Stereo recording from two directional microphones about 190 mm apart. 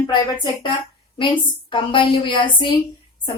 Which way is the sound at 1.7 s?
25° left (ahead or behind).